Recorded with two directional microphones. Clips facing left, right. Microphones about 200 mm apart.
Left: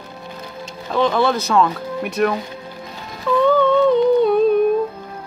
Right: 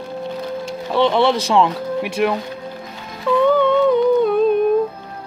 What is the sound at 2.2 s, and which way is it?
Speech, 15° right (ahead or behind).